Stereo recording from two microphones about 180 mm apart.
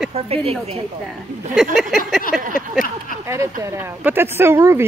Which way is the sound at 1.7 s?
Centre (ahead or behind).